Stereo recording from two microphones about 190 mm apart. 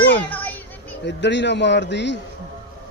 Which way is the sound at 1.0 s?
70° left (ahead or behind).